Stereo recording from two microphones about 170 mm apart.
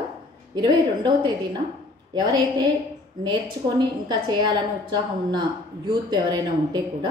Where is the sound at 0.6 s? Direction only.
25° right (ahead or behind).